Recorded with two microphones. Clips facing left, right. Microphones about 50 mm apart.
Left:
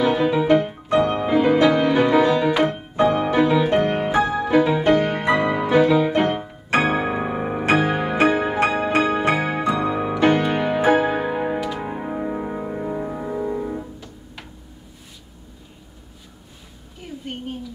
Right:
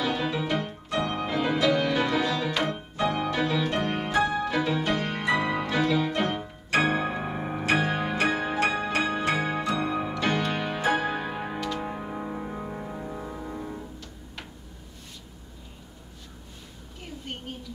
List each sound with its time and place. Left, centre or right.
0.0 s music: centre
2.7 s music: left
6.2 s piano: left
7.8 s music: left
17.0 s a sound: centre